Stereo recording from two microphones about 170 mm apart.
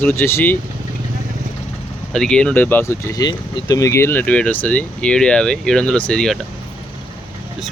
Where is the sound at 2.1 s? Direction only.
5° left (ahead or behind).